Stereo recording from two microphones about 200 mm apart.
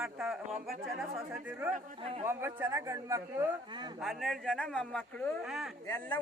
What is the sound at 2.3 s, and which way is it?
A man's voice, 10° right (ahead or behind).